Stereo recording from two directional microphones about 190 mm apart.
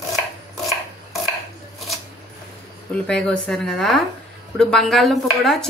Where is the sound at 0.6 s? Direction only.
Centre (ahead or behind).